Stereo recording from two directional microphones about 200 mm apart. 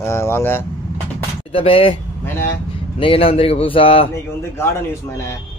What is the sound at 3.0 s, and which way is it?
A man's voice, 25° left (ahead or behind).